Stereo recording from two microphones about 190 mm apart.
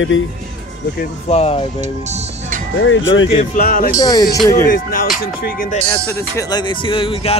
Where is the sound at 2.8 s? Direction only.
85° left.